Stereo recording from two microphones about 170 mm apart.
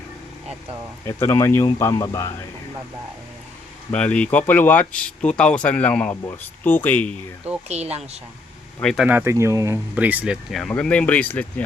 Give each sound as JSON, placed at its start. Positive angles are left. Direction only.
{"t": 1.0, "sound": "speech", "side_deg": 15}
{"t": 3.9, "sound": "speech", "side_deg": 5}
{"t": 7.7, "sound": "speech", "side_deg": -40}
{"t": 8.8, "sound": "speech", "side_deg": 0}
{"t": 9.0, "sound": "speech", "side_deg": -15}